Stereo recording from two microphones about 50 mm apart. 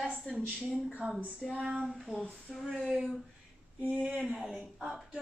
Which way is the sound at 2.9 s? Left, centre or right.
Centre.